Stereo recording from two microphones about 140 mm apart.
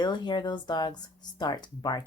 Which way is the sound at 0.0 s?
30° left (ahead or behind).